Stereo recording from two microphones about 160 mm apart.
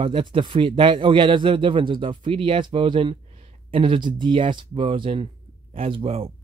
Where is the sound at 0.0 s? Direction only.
35° right (ahead or behind).